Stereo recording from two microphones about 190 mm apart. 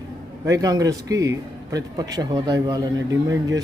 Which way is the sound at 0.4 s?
20° right (ahead or behind).